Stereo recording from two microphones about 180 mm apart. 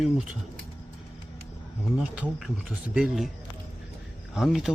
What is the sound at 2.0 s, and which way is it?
Speech, 5° right (ahead or behind).